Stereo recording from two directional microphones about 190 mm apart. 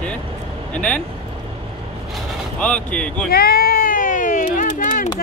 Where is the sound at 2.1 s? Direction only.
5° left (ahead or behind).